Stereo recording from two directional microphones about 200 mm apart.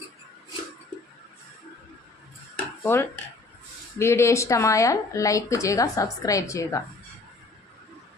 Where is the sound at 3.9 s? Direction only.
15° left (ahead or behind).